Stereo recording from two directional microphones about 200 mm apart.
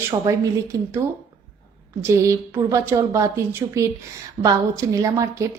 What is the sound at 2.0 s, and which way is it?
Speech, 15° right (ahead or behind).